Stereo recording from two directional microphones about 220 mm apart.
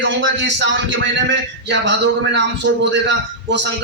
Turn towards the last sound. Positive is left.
turn(degrees=-55)  # may be behind; listen again after turning